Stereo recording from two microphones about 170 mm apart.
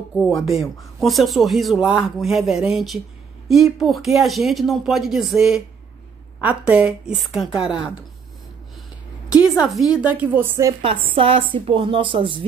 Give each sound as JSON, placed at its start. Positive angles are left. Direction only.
{"t": 0.1, "sound": "speech", "side_deg": 0}
{"t": 9.9, "sound": "speech", "side_deg": -10}
{"t": 10.8, "sound": "speech", "side_deg": -30}